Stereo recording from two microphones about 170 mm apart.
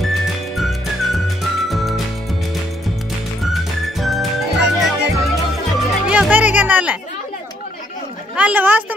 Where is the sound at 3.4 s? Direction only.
Centre (ahead or behind).